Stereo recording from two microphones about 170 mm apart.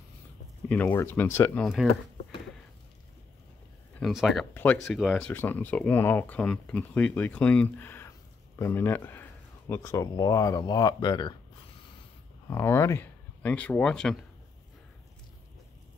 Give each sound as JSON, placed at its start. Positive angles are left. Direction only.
{"t": 0.7, "sound": "speech", "side_deg": 10}
{"t": 4.0, "sound": "speech", "side_deg": 0}
{"t": 12.4, "sound": "speech", "side_deg": 15}